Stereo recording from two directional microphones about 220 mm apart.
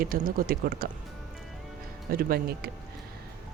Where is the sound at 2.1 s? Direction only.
40° right (ahead or behind).